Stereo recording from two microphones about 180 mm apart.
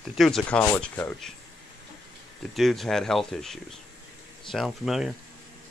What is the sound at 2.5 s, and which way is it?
Speech, centre (ahead or behind).